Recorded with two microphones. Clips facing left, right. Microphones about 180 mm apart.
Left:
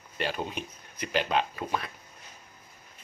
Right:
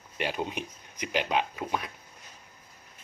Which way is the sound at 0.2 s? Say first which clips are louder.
Right 1 dB; 15° right (ahead or behind).